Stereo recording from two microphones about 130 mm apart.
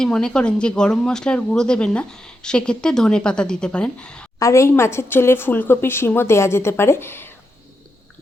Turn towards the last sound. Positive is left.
turn(degrees=15)  # may be behind; listen again after turning